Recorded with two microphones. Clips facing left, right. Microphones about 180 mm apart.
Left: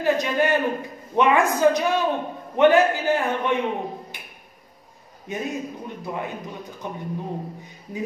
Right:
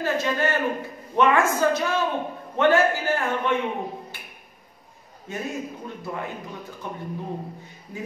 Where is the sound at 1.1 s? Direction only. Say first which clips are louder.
Left 1 dB; 15° left (ahead or behind).